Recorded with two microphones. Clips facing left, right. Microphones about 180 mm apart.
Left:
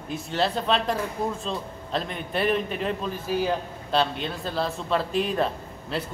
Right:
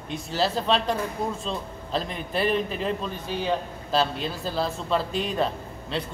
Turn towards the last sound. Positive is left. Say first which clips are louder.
# even
turn(degrees=5)  # may be behind; listen again after turning